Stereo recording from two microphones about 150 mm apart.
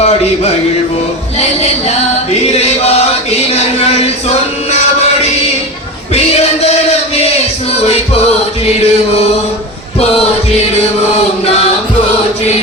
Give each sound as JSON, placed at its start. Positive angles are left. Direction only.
{"t": 0.0, "sound": "music", "side_deg": 45}
{"t": 1.9, "sound": "chant", "side_deg": 45}
{"t": 3.5, "sound": "a sound", "side_deg": 45}
{"t": 6.1, "sound": "music", "side_deg": 45}
{"t": 8.7, "sound": "chant", "side_deg": 45}